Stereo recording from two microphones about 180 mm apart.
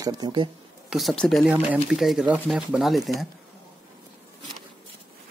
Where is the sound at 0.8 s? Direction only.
Centre (ahead or behind).